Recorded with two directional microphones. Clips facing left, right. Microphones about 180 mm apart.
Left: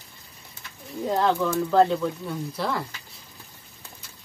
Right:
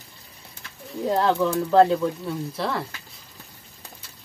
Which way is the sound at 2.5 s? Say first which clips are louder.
Even; centre (ahead or behind).